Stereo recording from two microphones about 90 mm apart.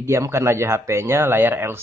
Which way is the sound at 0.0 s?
30° right (ahead or behind).